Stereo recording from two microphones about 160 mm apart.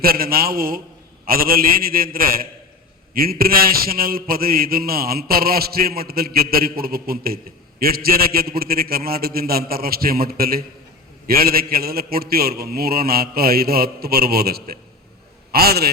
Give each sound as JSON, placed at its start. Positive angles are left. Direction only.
{"t": 0.0, "sound": "a man's voice", "side_deg": -70}